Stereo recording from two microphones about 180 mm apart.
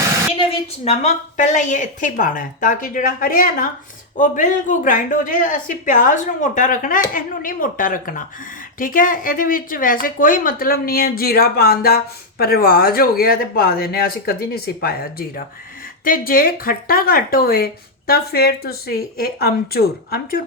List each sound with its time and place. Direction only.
0.9 s a woman's voice: 40° left (ahead or behind)
16.0 s a woman's voice: 50° left (ahead or behind)